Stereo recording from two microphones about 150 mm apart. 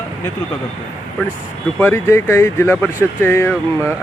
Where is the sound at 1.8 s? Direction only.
15° left (ahead or behind).